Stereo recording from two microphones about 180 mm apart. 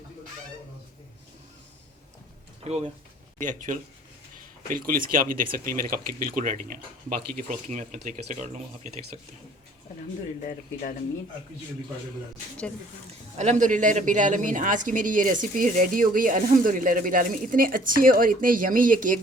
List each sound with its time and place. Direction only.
2.6 s speech: 35° right (ahead or behind)
10.4 s speech: 45° left (ahead or behind)
13.4 s speech: 40° right (ahead or behind)